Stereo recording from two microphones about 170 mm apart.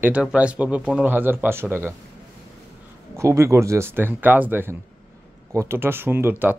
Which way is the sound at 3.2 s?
15° right (ahead or behind).